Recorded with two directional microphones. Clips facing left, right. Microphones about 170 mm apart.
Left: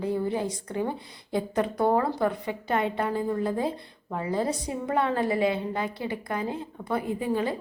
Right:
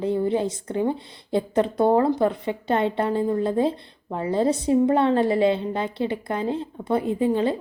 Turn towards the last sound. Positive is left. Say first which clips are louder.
# right 6 dB
turn(degrees=-25)  # may be behind; listen again after turning